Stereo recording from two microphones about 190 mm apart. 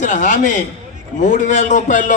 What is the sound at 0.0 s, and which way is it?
A man's voice, 40° left (ahead or behind).